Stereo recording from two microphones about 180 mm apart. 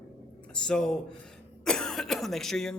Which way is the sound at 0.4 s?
5° left (ahead or behind).